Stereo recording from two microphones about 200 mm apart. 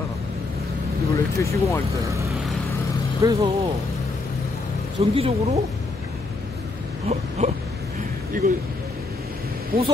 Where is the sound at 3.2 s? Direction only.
15° right (ahead or behind).